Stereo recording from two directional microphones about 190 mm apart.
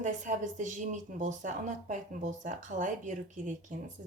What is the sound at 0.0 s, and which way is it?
Speech, 40° right (ahead or behind).